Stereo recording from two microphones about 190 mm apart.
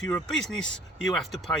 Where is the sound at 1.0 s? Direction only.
Centre (ahead or behind).